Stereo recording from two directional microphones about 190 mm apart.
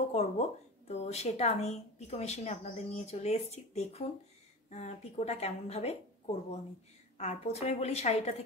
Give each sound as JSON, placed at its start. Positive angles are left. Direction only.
{"t": 0.1, "sound": "a woman's voice", "side_deg": 35}